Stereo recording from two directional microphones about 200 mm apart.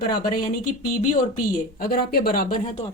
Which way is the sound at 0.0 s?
45° left (ahead or behind).